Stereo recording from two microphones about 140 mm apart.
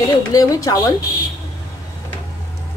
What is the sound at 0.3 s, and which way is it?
Speech, 25° left (ahead or behind).